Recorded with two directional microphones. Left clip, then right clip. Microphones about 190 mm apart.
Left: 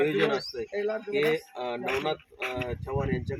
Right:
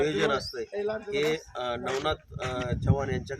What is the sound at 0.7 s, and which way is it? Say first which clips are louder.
Speech: left 1 dB; 55° left (ahead or behind).